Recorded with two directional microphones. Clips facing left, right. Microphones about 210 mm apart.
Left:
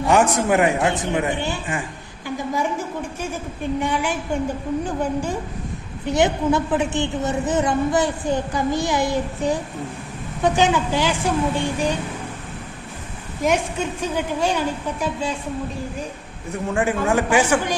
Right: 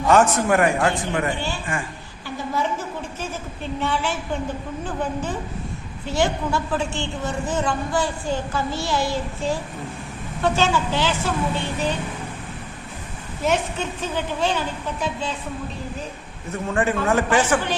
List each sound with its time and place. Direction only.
0.1 s a woman's voice: 15° left (ahead or behind)
13.4 s a woman's voice: 10° left (ahead or behind)
16.5 s a woman's voice: 15° left (ahead or behind)